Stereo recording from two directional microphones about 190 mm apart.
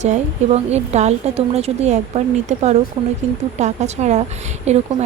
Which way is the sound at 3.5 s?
35° right (ahead or behind).